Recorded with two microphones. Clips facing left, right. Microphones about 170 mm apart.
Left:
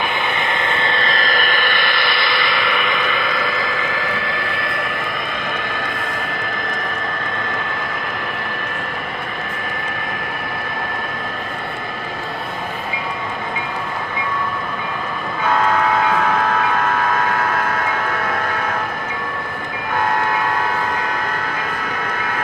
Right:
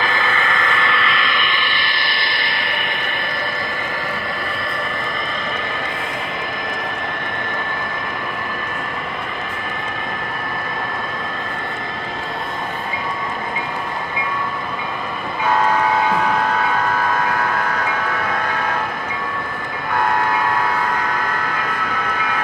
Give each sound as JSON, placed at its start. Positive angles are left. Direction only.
{"t": 0.5, "sound": "vehicle", "side_deg": 30}